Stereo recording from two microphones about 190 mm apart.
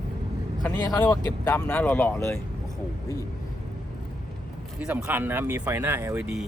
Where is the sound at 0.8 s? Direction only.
20° left (ahead or behind).